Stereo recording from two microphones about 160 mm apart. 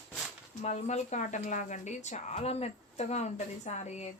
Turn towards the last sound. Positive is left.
turn(degrees=45)  # may be behind; listen again after turning